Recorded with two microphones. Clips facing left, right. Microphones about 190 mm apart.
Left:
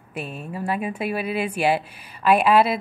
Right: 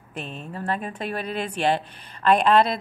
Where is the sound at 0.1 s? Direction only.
5° left (ahead or behind).